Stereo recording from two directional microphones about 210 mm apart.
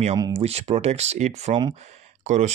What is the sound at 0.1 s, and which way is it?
Speech, 15° right (ahead or behind).